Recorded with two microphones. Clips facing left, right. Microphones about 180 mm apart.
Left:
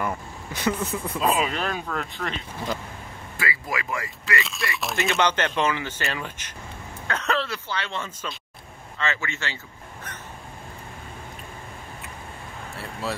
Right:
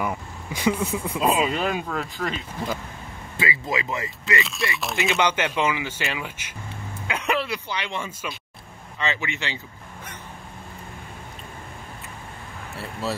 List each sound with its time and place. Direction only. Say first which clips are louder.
0.0 s speech: right 1 dB; 10° right (ahead or behind)
3.3 s speech: right 3 dB; 20° right (ahead or behind)
4.4 s speech: right 2 dB; centre (ahead or behind)
4.9 s speech: even; 15° right (ahead or behind)